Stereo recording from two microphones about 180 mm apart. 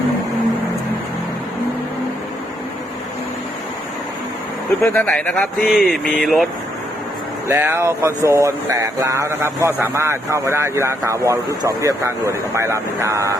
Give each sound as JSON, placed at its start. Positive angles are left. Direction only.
{"t": 4.8, "sound": "speech", "side_deg": 10}
{"t": 7.4, "sound": "speech", "side_deg": -15}